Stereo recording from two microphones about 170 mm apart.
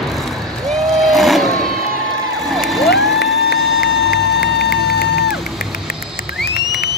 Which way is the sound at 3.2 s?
70° left (ahead or behind).